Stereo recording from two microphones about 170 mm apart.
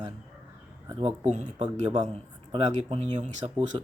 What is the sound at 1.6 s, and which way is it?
Speech, 25° right (ahead or behind).